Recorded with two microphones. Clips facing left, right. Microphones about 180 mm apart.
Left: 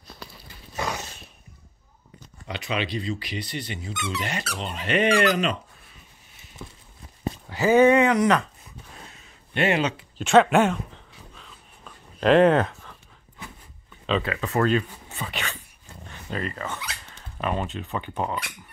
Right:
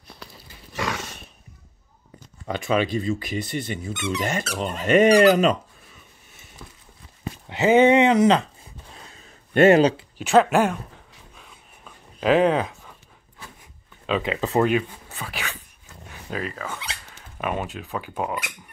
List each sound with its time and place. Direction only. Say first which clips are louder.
0.7 s horse: right 1 dB; 90° right
2.4 s speech: right 6 dB; 45° right (ahead or behind)
7.4 s a sound: right 1 dB; 20° right (ahead or behind)
10.1 s speech: left 2 dB; 5° right (ahead or behind)
11.3 s a sound: even; 10° right (ahead or behind)
14.2 s speech: right 6 dB; 25° right (ahead or behind)
14.7 s speech: right 1 dB; 5° right (ahead or behind)
16.0 s dog: right 1 dB; 5° right (ahead or behind)
17.1 s speech: even; 5° right (ahead or behind)